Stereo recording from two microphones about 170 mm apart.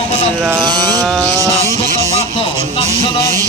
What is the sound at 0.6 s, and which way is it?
Music, 25° right (ahead or behind).